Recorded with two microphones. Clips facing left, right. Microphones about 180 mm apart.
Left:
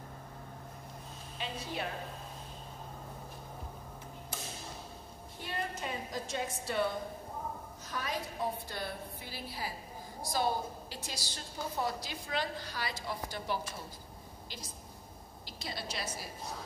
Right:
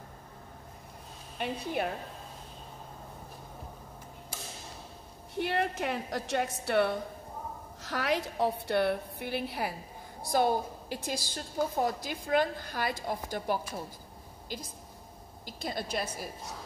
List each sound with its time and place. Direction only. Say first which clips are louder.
1.4 s a woman's voice: right 7 dB; 55° right (ahead or behind)
5.4 s a woman's voice: right 9 dB; 70° right (ahead or behind)
7.8 s a woman's voice: right 8 dB; 85° right; by 13.6 s 50° right (ahead or behind)
15.4 s a woman's voice: right 6 dB; 50° right (ahead or behind)